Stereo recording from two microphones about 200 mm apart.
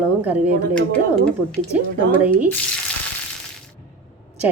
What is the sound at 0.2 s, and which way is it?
Speech, 5° right (ahead or behind).